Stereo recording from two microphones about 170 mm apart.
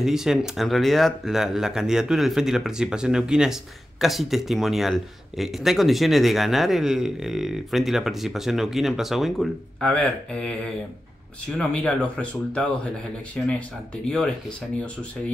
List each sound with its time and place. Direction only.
0.0 s speech: 5° right (ahead or behind)
11.5 s speech: 5° left (ahead or behind)